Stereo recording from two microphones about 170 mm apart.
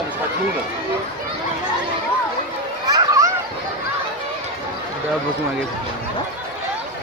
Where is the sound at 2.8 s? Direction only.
20° right (ahead or behind).